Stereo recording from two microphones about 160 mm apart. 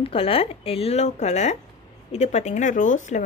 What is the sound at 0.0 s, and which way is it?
Speech, 35° left (ahead or behind).